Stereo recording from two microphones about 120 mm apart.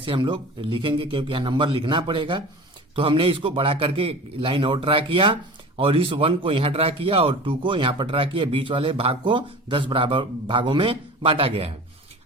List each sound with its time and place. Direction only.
0.0 s a man's voice: 45° right (ahead or behind)